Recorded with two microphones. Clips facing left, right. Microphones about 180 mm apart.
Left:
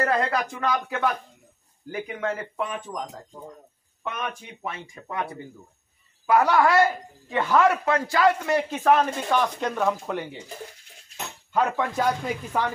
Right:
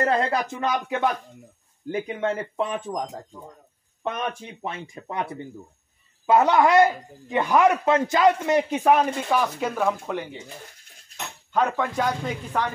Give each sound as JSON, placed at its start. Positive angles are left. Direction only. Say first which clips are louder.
{"t": 0.0, "sound": "speech", "louder": "right 1 dB", "side_deg": -25}
{"t": 4.0, "sound": "speech", "louder": "right 4 dB", "side_deg": -30}
{"t": 11.5, "sound": "speech", "louder": "right 1 dB", "side_deg": 5}